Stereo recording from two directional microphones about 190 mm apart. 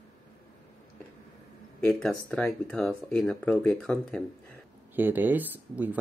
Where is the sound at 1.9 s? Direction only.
5° left (ahead or behind).